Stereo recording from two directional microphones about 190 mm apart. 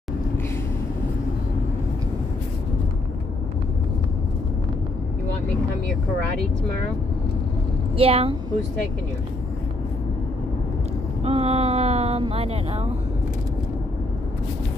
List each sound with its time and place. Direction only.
8.0 s speech: 30° right (ahead or behind)
11.2 s speech: 30° right (ahead or behind)